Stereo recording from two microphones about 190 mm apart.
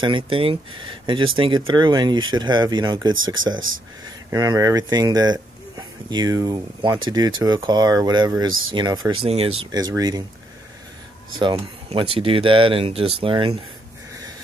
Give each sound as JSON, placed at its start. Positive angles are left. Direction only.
{"t": 0.0, "sound": "speech", "side_deg": -25}
{"t": 4.3, "sound": "speech", "side_deg": -20}
{"t": 11.9, "sound": "speech", "side_deg": -30}